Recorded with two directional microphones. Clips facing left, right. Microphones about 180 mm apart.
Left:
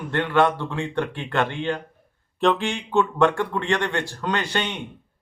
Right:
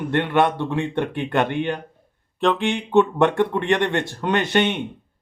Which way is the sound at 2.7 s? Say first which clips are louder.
Right 5 dB; 20° right (ahead or behind).